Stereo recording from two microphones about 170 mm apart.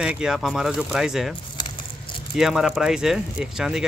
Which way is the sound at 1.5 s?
25° left (ahead or behind).